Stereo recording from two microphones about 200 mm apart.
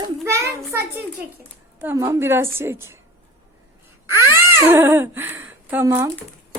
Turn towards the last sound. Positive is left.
turn(degrees=-15)  # may be behind; listen again after turning